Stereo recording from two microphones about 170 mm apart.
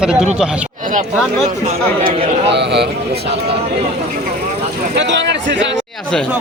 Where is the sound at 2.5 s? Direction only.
90° right.